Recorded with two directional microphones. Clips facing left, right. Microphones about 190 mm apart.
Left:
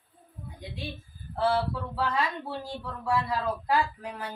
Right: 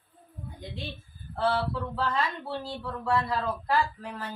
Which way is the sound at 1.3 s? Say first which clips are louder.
Left 1 dB; 10° left (ahead or behind).